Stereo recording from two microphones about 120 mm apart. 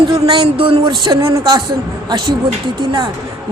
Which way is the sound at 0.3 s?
45° right (ahead or behind).